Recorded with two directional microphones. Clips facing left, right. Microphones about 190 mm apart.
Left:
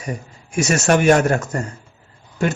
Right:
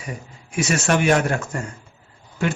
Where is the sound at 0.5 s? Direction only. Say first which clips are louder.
Left 4 dB; 45° left (ahead or behind).